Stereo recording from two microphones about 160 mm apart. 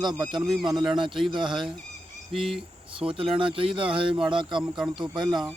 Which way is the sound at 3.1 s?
35° right (ahead or behind).